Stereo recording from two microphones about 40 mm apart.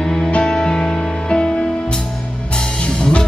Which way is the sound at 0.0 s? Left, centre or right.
Left.